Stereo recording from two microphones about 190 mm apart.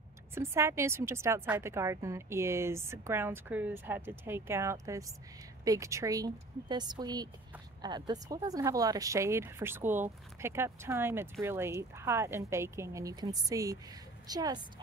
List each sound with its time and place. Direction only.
0.3 s a woman's voice: 15° right (ahead or behind)